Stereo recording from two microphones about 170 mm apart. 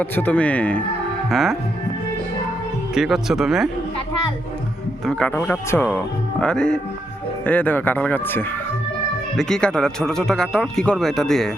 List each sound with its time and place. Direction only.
0.0 s speech: 10° left (ahead or behind)
2.9 s speech: centre (ahead or behind)
5.0 s speech: 5° left (ahead or behind)